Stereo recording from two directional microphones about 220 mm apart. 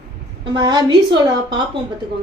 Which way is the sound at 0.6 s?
20° right (ahead or behind).